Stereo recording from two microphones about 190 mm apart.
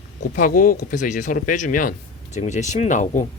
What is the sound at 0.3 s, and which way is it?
Speech, 45° left (ahead or behind).